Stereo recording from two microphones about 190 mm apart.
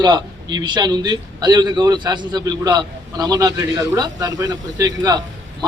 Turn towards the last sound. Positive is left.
turn(degrees=-20)  # may be behind; listen again after turning